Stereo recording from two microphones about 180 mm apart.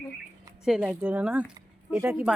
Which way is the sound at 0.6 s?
5° right (ahead or behind).